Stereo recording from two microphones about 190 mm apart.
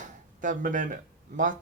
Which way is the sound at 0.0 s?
45° right (ahead or behind).